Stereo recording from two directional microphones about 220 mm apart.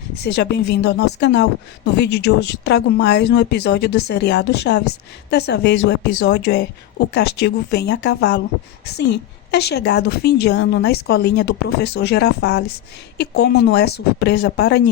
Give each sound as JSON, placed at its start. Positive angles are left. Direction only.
{"t": 0.2, "sound": "a woman's voice", "side_deg": 50}